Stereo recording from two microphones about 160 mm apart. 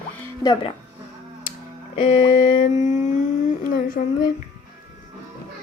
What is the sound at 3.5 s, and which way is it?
Speech, 55° left (ahead or behind).